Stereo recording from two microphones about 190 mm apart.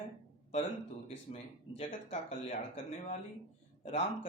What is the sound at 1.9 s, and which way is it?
Speech, 40° left (ahead or behind).